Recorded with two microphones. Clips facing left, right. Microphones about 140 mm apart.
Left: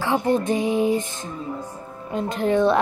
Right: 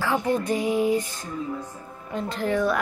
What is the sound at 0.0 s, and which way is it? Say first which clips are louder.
Speech: left 3 dB; 20° left (ahead or behind).